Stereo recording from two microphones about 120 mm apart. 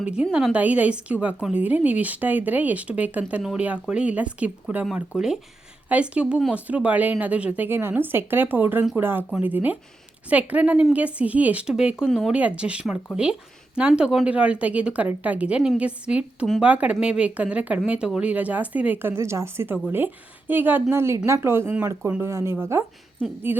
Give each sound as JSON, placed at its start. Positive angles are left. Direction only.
{"t": 0.0, "sound": "a woman's voice", "side_deg": -10}